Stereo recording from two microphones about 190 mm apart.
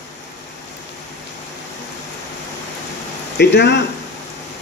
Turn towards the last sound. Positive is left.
turn(degrees=65)  # may be behind; listen again after turning